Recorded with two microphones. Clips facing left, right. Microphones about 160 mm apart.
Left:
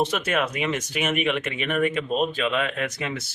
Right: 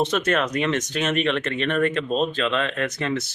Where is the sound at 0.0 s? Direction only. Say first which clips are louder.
Right 2 dB; 10° left (ahead or behind).